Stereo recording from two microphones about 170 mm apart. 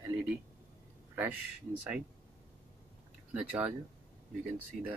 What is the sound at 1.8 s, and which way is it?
Speech, 10° right (ahead or behind).